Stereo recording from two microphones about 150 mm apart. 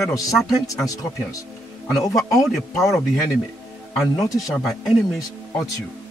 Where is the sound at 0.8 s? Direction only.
25° left (ahead or behind).